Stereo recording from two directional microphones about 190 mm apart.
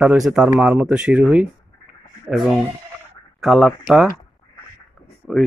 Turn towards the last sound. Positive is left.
turn(degrees=0)  # may be behind; listen again after turning